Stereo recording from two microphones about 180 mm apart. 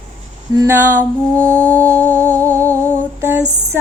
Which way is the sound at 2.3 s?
15° right (ahead or behind).